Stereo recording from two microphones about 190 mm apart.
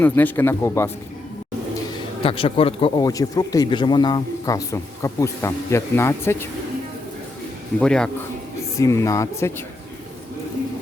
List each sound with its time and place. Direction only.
0.0 s speech: 10° left (ahead or behind)
2.2 s speech: 30° left (ahead or behind); by 6.5 s 15° left (ahead or behind)
7.8 s a man's voice: 5° left (ahead or behind)
8.8 s speech: 15° left (ahead or behind)